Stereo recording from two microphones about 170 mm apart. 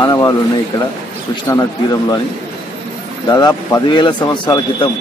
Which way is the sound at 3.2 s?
25° left (ahead or behind).